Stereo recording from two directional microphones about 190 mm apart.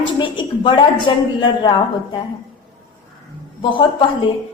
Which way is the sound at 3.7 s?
25° left (ahead or behind).